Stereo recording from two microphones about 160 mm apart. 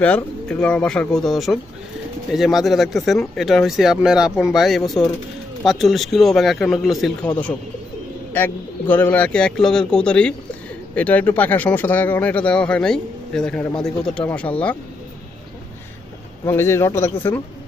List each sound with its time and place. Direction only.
0.0 s speech: 5° left (ahead or behind)
16.4 s speech: 15° left (ahead or behind)